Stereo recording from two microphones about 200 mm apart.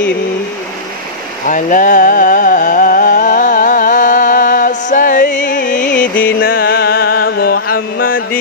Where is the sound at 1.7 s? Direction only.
45° left (ahead or behind).